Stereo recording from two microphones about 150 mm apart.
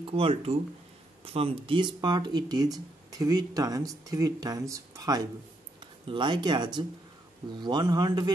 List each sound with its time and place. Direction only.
0.0 s speech: 40° right (ahead or behind)